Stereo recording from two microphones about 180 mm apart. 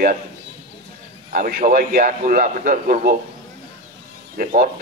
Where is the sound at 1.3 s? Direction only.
50° right (ahead or behind).